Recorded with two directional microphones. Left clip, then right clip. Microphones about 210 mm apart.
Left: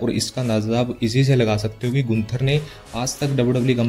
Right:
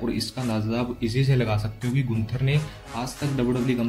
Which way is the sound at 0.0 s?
40° left (ahead or behind).